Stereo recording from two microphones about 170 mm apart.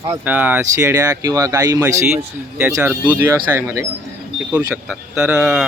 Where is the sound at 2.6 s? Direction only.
10° right (ahead or behind).